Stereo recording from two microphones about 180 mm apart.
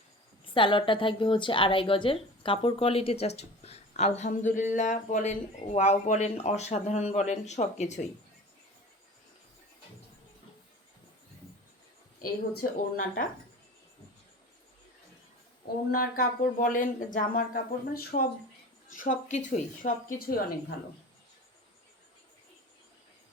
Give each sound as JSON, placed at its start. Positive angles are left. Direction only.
{"t": 0.5, "sound": "a woman's voice", "side_deg": 25}
{"t": 12.6, "sound": "speech", "side_deg": 55}
{"t": 15.9, "sound": "speech", "side_deg": 55}